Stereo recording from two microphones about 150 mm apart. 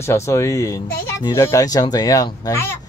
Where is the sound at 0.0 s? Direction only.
20° left (ahead or behind).